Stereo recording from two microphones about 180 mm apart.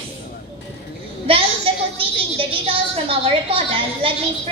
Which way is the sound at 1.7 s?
30° right (ahead or behind).